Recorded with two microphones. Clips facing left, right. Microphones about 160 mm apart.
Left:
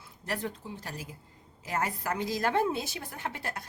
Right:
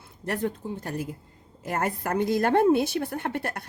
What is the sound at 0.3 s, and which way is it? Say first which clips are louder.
A woman's voice: right 6 dB; 55° right (ahead or behind).